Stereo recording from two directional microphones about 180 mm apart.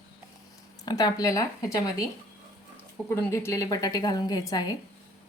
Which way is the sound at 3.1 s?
15° left (ahead or behind).